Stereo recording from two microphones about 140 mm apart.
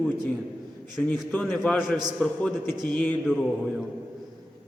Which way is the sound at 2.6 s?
30° right (ahead or behind).